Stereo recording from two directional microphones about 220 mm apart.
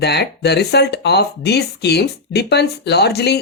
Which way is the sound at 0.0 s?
50° left (ahead or behind).